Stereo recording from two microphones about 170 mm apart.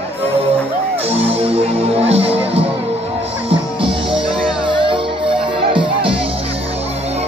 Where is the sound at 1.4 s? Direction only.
35° right (ahead or behind).